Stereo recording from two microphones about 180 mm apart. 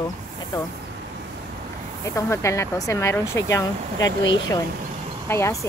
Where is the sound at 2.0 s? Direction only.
15° left (ahead or behind).